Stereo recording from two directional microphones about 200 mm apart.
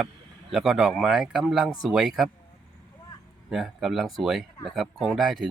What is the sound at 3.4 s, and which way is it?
Speech, centre (ahead or behind).